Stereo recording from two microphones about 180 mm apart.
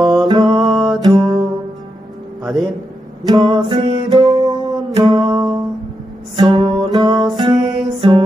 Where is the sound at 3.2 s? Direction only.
20° right (ahead or behind).